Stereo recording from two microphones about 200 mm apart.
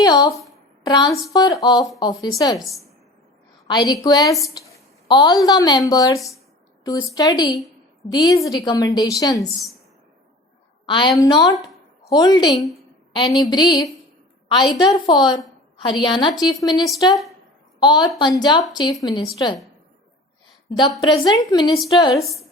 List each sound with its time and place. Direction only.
0.0 s a woman's voice: 20° left (ahead or behind)
3.7 s a woman's voice: 20° left (ahead or behind)
10.8 s a woman's voice: 25° left (ahead or behind)
20.7 s a woman's voice: 20° left (ahead or behind)
22.1 s a woman's voice: centre (ahead or behind)